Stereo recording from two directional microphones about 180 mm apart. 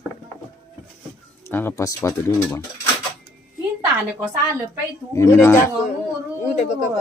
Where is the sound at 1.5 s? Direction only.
10° left (ahead or behind).